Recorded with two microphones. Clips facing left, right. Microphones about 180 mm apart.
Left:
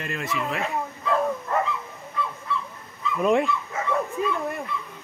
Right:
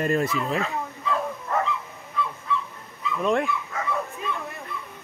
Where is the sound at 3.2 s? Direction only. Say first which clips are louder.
Left 3 dB; centre (ahead or behind).